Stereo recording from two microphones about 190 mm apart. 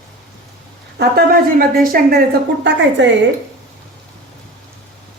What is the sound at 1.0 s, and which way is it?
A woman's voice, 50° right (ahead or behind).